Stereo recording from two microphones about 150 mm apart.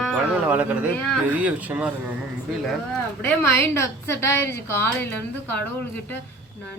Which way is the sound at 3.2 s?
15° left (ahead or behind).